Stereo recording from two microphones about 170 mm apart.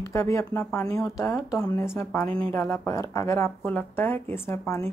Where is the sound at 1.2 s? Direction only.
20° left (ahead or behind).